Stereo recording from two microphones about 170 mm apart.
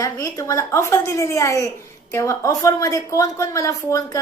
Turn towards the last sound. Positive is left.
turn(degrees=20)  # may be behind; listen again after turning